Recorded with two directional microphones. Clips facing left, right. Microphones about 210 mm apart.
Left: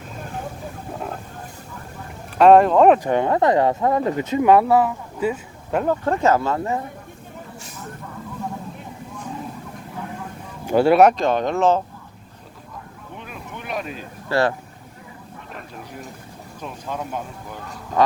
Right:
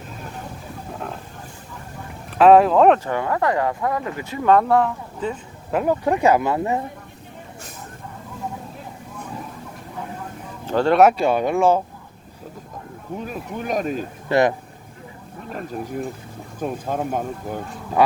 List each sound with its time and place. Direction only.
2.4 s speech: centre (ahead or behind)
3.0 s speech: 20° left (ahead or behind)
4.5 s speech: 5° left (ahead or behind)
5.8 s speech: 10° right (ahead or behind)
10.7 s speech: 10° left (ahead or behind)
11.0 s speech: 10° right (ahead or behind)
13.1 s speech: 40° right (ahead or behind)
14.3 s speech: 20° right (ahead or behind)
15.4 s speech: 40° right (ahead or behind)